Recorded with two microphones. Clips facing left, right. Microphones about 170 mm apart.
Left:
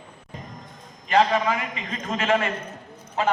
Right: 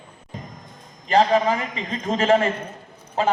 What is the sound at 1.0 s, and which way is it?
A man's voice, 35° right (ahead or behind).